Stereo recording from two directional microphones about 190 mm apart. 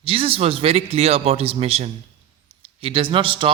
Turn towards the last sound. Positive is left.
turn(degrees=-25)  # may be behind; listen again after turning